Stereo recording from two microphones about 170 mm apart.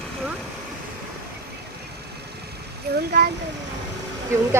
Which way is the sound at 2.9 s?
70° right (ahead or behind).